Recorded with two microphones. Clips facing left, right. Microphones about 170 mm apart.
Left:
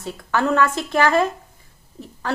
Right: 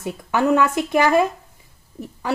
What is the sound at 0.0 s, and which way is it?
Speech, 15° right (ahead or behind).